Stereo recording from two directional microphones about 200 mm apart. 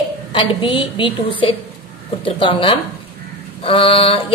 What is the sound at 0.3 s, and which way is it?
A woman's voice, 25° left (ahead or behind).